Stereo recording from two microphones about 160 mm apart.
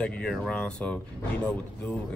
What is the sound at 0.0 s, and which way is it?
Speech, 5° left (ahead or behind).